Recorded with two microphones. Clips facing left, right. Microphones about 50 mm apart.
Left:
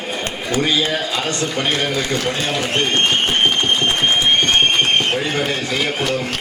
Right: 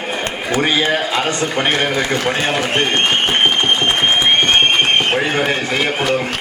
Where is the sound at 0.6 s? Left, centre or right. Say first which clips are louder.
Right 3 dB; right.